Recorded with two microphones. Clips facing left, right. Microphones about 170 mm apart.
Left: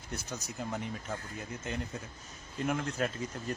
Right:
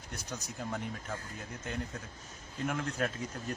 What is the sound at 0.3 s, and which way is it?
Speech, 10° left (ahead or behind).